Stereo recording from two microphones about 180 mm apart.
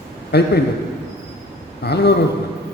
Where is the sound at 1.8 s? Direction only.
65° left (ahead or behind).